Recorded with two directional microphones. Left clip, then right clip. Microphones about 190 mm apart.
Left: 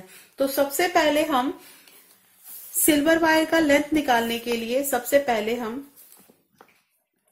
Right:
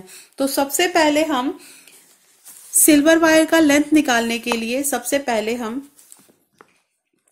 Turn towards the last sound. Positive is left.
turn(degrees=-40)  # may be behind; listen again after turning